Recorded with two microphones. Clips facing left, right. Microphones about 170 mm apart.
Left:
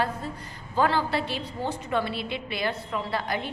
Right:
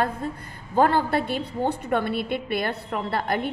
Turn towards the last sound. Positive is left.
turn(degrees=-55)  # may be behind; listen again after turning